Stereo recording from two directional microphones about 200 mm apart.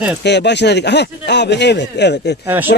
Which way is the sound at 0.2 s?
60° left (ahead or behind).